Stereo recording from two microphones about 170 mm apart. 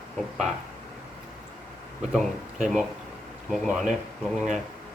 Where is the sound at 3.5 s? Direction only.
Centre (ahead or behind).